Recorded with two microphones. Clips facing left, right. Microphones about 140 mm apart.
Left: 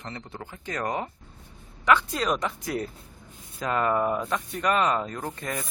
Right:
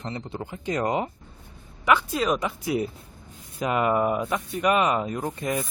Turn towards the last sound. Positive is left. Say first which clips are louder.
# right 5 dB
turn(degrees=-15)  # may be behind; listen again after turning